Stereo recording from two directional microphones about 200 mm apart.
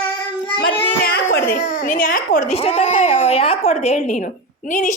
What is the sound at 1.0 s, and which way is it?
Baby cry, 50° left (ahead or behind).